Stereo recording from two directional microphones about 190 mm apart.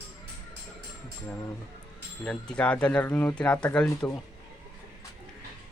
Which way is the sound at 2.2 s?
5° left (ahead or behind).